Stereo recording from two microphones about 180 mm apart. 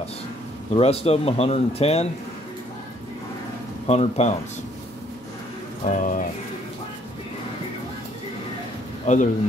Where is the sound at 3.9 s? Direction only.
35° left (ahead or behind).